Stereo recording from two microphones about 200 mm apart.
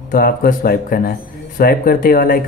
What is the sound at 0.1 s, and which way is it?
Speech, 45° left (ahead or behind).